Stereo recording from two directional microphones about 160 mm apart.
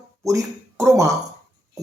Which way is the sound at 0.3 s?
20° right (ahead or behind).